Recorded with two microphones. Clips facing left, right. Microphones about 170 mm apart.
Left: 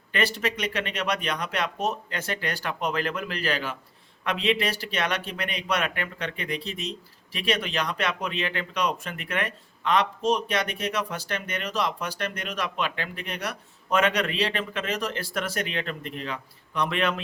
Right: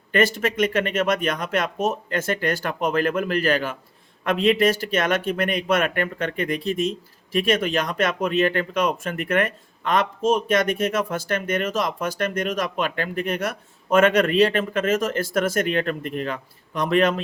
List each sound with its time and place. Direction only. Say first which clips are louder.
0.1 s speech: right 6 dB; 45° right (ahead or behind)